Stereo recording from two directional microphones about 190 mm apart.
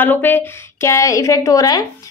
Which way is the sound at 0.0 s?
10° left (ahead or behind).